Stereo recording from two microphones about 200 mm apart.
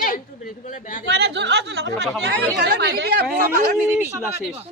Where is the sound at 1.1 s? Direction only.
55° right (ahead or behind).